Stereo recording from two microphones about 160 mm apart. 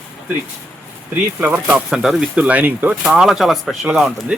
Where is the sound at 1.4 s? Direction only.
10° right (ahead or behind).